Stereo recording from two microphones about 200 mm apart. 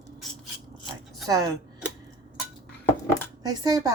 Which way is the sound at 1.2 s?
15° right (ahead or behind).